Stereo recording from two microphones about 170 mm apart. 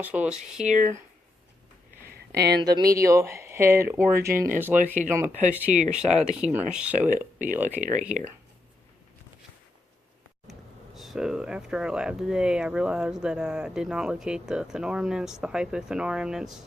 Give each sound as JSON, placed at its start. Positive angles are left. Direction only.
{"t": 0.0, "sound": "speech", "side_deg": -10}
{"t": 0.6, "sound": "speech", "side_deg": -45}
{"t": 2.0, "sound": "a sound", "side_deg": -65}
{"t": 2.6, "sound": "speech", "side_deg": -25}
{"t": 4.7, "sound": "speech", "side_deg": -5}
{"t": 7.8, "sound": "speech", "side_deg": -50}
{"t": 10.9, "sound": "speech", "side_deg": 0}